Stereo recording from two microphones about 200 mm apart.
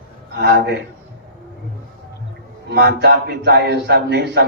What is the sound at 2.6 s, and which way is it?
A man's voice, 55° right (ahead or behind).